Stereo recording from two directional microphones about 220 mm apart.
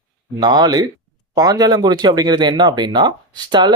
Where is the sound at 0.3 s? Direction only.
20° right (ahead or behind).